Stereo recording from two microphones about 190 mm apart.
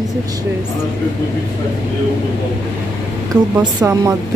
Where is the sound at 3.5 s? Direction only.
15° right (ahead or behind).